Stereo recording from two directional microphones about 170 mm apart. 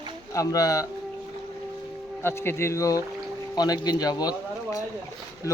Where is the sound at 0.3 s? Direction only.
20° left (ahead or behind).